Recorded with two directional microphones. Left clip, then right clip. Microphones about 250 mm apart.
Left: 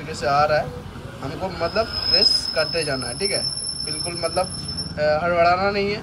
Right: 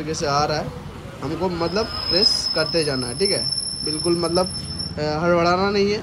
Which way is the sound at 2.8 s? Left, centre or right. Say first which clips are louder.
Right 2 dB; centre.